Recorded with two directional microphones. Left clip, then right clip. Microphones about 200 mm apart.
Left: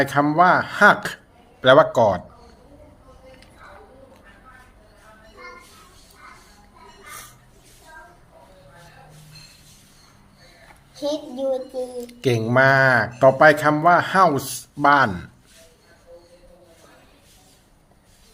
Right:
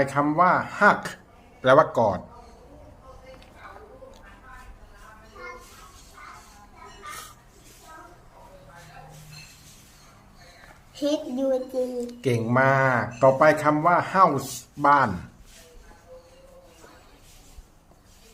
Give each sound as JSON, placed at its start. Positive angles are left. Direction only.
{"t": 0.0, "sound": "speech", "side_deg": 15}
{"t": 11.3, "sound": "a woman's voice", "side_deg": -30}
{"t": 12.2, "sound": "speech", "side_deg": 15}